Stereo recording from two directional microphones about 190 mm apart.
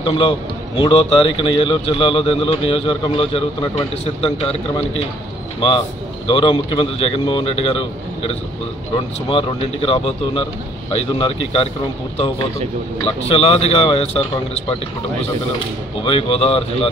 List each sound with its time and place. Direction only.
0.0 s a man's voice: 30° left (ahead or behind)
6.2 s speech: 30° left (ahead or behind)
13.3 s speech: 30° left (ahead or behind)
16.0 s speech: 30° left (ahead or behind)